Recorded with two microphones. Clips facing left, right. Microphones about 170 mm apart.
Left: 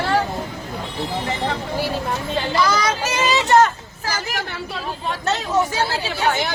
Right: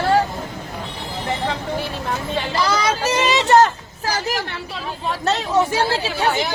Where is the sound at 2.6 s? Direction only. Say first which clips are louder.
Even; 30° right (ahead or behind).